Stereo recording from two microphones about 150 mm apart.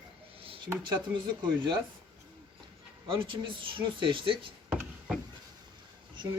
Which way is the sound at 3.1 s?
35° right (ahead or behind).